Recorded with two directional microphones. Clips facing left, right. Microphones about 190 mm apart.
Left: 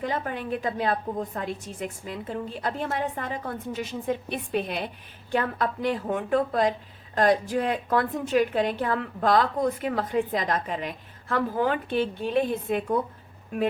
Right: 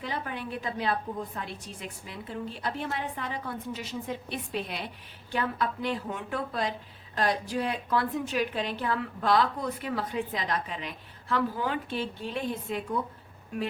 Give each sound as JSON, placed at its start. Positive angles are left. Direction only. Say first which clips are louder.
{"t": 0.0, "sound": "a woman's voice", "louder": "left 5 dB", "side_deg": 50}